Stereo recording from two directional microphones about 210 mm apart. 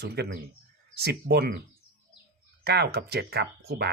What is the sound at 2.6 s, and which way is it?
Speech, 50° right (ahead or behind).